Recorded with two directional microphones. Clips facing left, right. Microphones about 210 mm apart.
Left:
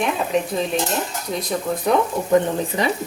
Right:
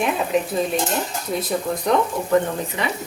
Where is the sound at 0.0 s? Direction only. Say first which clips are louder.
Even; centre (ahead or behind).